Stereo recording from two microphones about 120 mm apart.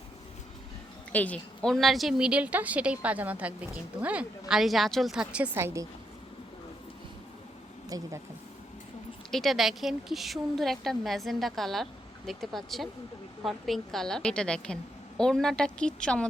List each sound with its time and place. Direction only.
1.1 s a woman's voice: 10° left (ahead or behind); by 5.5 s 10° right (ahead or behind)
5.5 s speech: 20° right (ahead or behind)
7.9 s speech: 30° right (ahead or behind)
9.3 s a woman's voice: centre (ahead or behind)